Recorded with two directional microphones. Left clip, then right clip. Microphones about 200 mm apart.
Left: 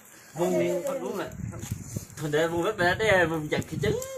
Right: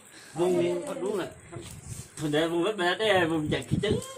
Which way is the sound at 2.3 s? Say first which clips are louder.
Left 1 dB; 40° right (ahead or behind).